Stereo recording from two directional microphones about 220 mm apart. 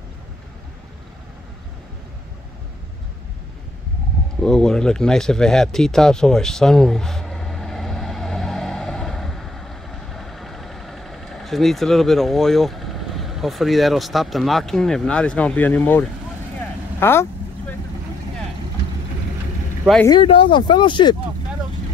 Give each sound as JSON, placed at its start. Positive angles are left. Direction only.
{"t": 4.4, "sound": "a sound", "side_deg": 0}
{"t": 17.0, "sound": "vehicle", "side_deg": 10}
{"t": 20.1, "sound": "speech", "side_deg": 25}